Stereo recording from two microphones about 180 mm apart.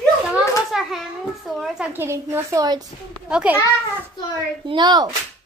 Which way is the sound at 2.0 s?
15° right (ahead or behind).